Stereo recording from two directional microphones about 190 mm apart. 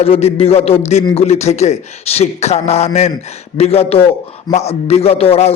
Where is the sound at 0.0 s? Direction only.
30° left (ahead or behind).